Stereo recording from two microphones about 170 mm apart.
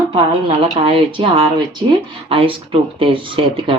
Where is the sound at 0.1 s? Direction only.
30° right (ahead or behind).